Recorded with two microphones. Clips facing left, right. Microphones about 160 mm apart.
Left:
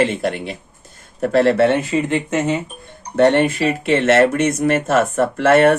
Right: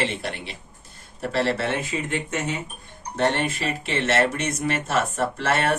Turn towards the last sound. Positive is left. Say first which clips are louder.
# left 11 dB
turn(degrees=55)  # may be behind; listen again after turning